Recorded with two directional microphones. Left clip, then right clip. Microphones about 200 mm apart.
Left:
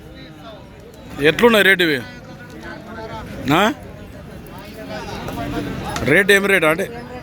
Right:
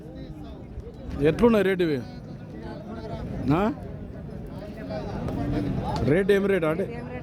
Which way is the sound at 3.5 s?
10° left (ahead or behind).